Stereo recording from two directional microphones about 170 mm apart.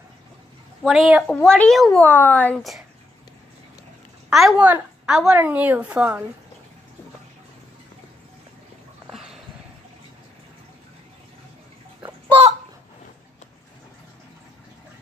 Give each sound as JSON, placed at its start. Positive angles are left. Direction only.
{"t": 0.8, "sound": "a woman's voice", "side_deg": 0}
{"t": 4.3, "sound": "a woman's voice", "side_deg": 0}
{"t": 9.1, "sound": "a sound", "side_deg": 0}
{"t": 12.0, "sound": "bathtub", "side_deg": -35}